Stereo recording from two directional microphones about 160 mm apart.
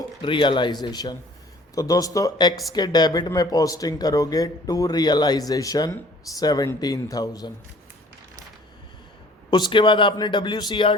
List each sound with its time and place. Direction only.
0.2 s speech: 30° left (ahead or behind)
9.5 s speech: 25° left (ahead or behind)